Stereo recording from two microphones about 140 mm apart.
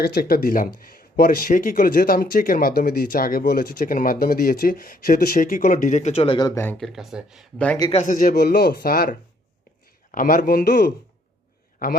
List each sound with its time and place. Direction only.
0.0 s speech: 90° left; by 6.5 s 40° left (ahead or behind)
6.5 s speech: 15° left (ahead or behind)
6.7 s speech: centre (ahead or behind)
7.9 s speech: 65° left (ahead or behind); by 10.8 s 90° left